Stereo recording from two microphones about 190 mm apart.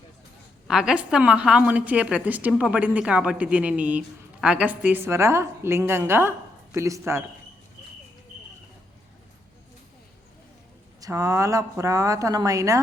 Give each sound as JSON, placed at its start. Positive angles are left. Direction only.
{"t": 0.7, "sound": "a woman's voice", "side_deg": -5}
{"t": 11.0, "sound": "a woman's voice", "side_deg": -15}